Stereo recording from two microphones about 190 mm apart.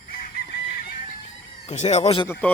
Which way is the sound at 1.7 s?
35° left (ahead or behind).